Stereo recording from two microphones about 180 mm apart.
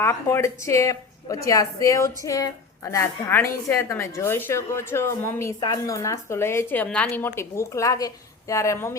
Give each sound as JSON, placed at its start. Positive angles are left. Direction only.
{"t": 0.0, "sound": "a woman's voice", "side_deg": 15}